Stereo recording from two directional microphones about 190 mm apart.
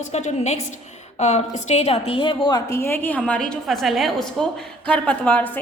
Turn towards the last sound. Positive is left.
turn(degrees=10)  # may be behind; listen again after turning